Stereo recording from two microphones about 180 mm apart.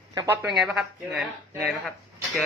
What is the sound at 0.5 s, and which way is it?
Speech, centre (ahead or behind).